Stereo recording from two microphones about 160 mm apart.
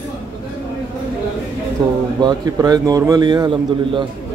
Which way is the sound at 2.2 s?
25° right (ahead or behind).